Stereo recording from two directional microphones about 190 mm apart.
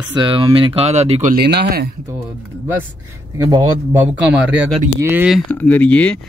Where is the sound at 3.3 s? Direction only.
15° right (ahead or behind).